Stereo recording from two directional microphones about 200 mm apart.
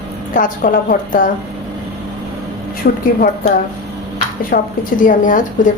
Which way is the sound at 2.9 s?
50° left (ahead or behind).